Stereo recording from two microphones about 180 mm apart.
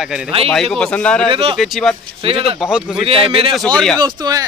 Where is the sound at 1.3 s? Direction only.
30° right (ahead or behind).